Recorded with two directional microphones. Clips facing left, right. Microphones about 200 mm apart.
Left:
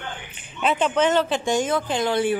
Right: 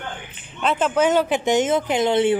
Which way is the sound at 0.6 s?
5° right (ahead or behind).